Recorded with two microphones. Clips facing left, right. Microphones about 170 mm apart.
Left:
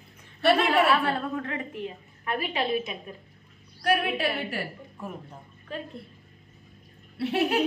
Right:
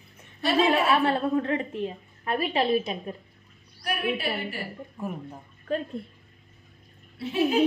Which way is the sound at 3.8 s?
75° left (ahead or behind).